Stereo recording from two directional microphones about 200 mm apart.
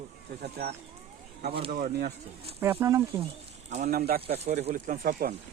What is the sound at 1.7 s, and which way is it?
Speech, 40° right (ahead or behind).